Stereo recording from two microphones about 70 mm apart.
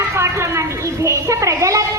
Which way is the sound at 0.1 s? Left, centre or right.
Right.